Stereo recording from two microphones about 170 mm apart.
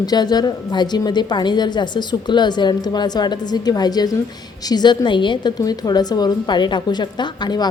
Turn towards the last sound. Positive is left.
turn(degrees=25)  # may be behind; listen again after turning